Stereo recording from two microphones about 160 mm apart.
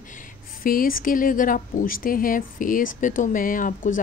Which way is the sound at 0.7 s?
65° left (ahead or behind).